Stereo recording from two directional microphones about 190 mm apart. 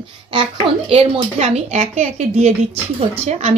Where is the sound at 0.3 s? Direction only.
25° right (ahead or behind).